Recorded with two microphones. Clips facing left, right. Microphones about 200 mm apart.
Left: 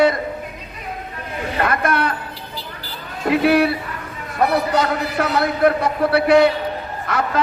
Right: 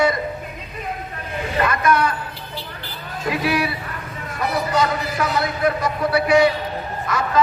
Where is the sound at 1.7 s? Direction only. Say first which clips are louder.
Right 1 dB; 60° left (ahead or behind).